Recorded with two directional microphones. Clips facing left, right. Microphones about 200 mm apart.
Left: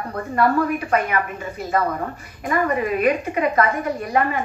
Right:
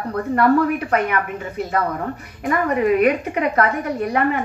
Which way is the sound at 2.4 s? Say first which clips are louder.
Right 3 dB; 60° right (ahead or behind).